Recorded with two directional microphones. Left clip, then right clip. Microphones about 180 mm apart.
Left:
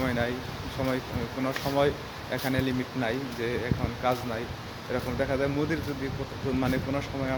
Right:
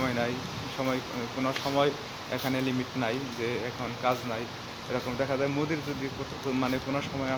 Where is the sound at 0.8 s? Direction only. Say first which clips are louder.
Left 1 dB; centre (ahead or behind).